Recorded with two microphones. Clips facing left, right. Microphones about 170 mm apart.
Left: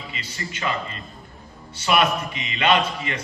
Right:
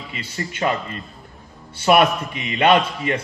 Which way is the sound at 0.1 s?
50° right (ahead or behind).